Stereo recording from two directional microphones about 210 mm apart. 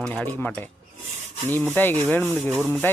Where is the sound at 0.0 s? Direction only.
5° left (ahead or behind).